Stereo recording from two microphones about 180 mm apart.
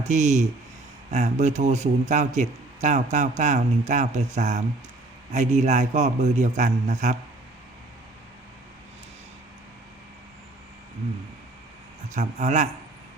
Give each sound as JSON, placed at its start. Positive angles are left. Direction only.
{"t": 0.0, "sound": "a man's voice", "side_deg": -40}
{"t": 12.1, "sound": "a man's voice", "side_deg": -40}